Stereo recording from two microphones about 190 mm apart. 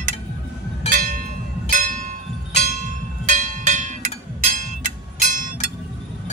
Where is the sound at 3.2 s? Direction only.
40° right (ahead or behind).